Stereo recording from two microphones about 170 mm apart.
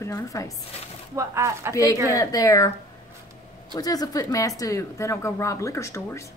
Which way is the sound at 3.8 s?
20° left (ahead or behind).